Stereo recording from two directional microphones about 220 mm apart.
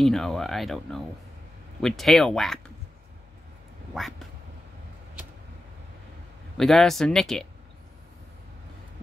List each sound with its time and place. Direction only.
0.0 s speech: centre (ahead or behind)
3.9 s speech: centre (ahead or behind)
6.5 s speech: centre (ahead or behind)